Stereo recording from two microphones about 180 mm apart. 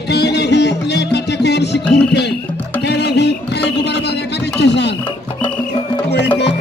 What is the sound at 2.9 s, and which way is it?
Music, 65° left (ahead or behind).